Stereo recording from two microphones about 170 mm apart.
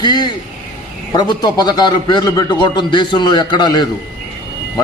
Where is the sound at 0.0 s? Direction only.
25° left (ahead or behind).